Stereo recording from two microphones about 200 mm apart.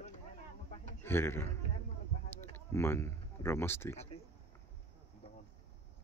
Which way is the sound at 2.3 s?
10° left (ahead or behind).